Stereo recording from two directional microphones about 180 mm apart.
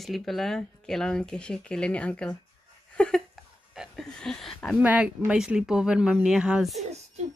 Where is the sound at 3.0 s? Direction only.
5° left (ahead or behind).